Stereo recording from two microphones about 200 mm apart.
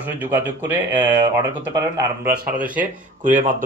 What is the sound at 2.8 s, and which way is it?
Speech, 40° right (ahead or behind).